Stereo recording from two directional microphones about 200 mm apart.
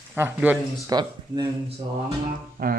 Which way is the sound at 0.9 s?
20° right (ahead or behind).